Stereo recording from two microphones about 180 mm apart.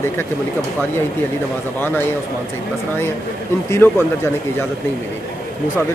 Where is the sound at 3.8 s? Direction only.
10° left (ahead or behind).